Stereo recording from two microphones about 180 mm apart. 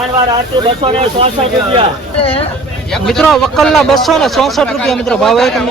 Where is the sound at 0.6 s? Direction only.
30° right (ahead or behind).